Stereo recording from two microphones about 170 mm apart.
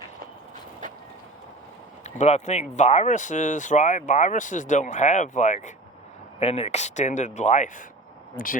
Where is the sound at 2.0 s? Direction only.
40° left (ahead or behind).